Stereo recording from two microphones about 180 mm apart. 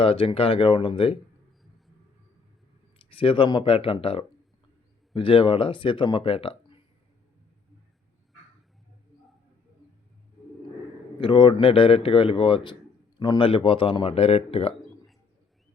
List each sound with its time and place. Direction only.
0.0 s speech: 30° left (ahead or behind)
3.1 s speech: 30° left (ahead or behind)
11.2 s speech: 25° left (ahead or behind)